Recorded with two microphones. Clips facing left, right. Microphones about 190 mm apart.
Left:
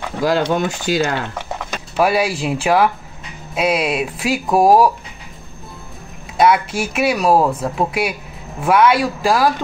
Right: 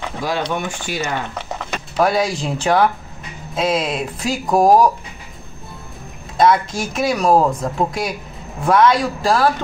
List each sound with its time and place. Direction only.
0.8 s speech: 90° left
1.3 s speech: 10° left (ahead or behind)
6.3 s speech: 5° left (ahead or behind)